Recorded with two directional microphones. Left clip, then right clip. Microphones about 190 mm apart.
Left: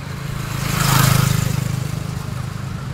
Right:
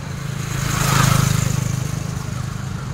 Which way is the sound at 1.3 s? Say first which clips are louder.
Even; 10° left (ahead or behind).